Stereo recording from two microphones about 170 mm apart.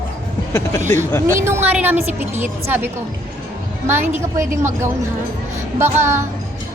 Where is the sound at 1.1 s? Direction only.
15° left (ahead or behind).